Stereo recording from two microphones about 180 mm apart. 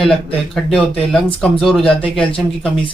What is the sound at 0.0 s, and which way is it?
Speech, centre (ahead or behind).